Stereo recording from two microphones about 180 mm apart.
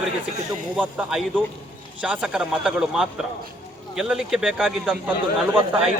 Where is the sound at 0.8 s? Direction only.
Centre (ahead or behind).